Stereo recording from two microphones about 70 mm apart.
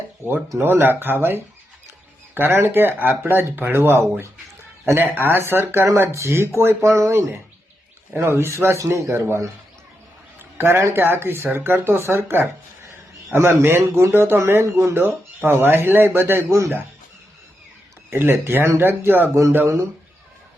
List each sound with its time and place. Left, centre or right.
0.6 s speech: right
10.6 s a man's voice: right
16.5 s speech: right
18.1 s speech: right
19.6 s speech: right